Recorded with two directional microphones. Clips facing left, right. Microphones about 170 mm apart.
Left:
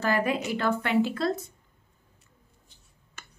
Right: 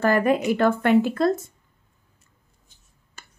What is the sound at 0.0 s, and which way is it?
A woman's voice, 50° right (ahead or behind).